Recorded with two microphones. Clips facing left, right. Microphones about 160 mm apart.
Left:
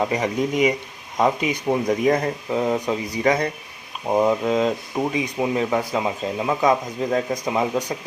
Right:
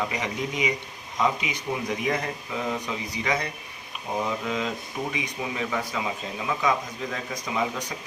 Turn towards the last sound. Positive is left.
turn(degrees=40)  # may be behind; listen again after turning